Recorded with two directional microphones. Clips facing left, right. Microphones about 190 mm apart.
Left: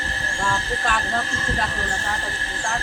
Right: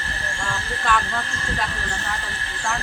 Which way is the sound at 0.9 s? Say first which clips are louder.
Right 5 dB; 40° left (ahead or behind).